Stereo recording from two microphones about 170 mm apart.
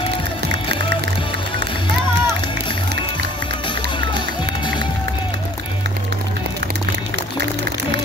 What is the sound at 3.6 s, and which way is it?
Run, 30° left (ahead or behind).